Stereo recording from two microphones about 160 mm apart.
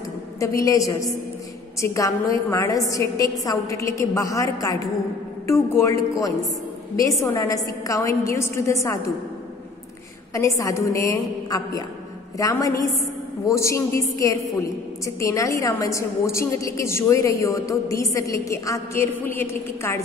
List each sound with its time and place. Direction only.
0.4 s a woman's voice: 20° left (ahead or behind)
10.3 s a woman's voice: 20° left (ahead or behind)